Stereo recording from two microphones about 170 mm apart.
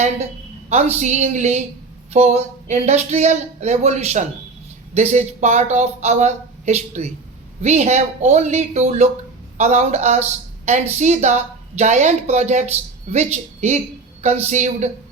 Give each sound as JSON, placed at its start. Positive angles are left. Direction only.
{"t": 0.7, "sound": "a woman's voice", "side_deg": -40}